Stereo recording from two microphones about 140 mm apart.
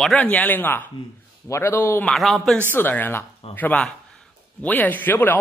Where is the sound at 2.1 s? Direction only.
Centre (ahead or behind).